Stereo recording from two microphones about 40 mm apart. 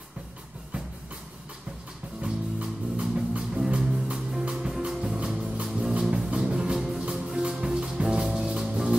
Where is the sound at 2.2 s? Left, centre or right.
Right.